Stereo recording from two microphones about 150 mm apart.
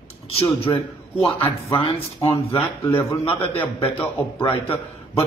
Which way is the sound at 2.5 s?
15° left (ahead or behind).